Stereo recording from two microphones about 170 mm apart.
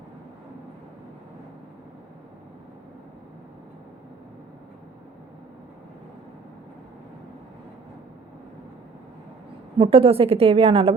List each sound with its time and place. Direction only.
9.7 s a woman's voice: 35° right (ahead or behind)